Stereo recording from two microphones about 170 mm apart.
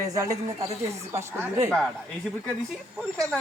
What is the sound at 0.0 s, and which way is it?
A man's voice, 20° right (ahead or behind).